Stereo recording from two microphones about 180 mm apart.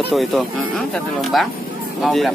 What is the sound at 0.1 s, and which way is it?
Speech, centre (ahead or behind).